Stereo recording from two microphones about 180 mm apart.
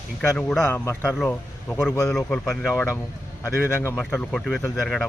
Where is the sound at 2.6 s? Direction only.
15° left (ahead or behind).